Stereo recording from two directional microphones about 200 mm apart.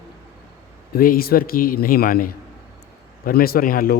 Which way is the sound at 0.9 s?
45° left (ahead or behind).